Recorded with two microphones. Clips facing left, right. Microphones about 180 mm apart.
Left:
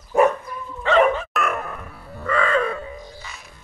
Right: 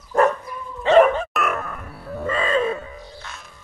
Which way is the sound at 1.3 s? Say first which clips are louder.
Even; centre (ahead or behind).